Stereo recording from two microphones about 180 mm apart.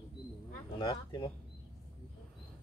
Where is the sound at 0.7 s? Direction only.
25° left (ahead or behind).